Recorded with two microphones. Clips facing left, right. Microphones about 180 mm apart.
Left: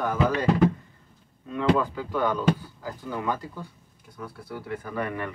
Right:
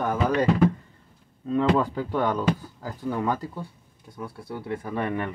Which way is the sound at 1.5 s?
35° right (ahead or behind).